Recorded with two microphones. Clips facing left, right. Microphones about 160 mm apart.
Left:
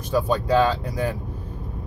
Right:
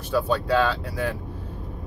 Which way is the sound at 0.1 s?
15° left (ahead or behind).